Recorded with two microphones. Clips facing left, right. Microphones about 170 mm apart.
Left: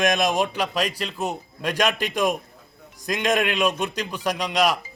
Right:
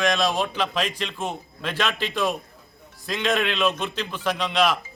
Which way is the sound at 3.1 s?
45° left (ahead or behind).